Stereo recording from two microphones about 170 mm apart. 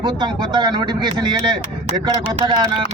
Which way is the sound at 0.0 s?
25° right (ahead or behind).